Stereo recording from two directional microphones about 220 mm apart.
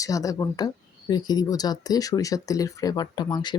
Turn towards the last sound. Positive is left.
turn(degrees=20)  # may be behind; listen again after turning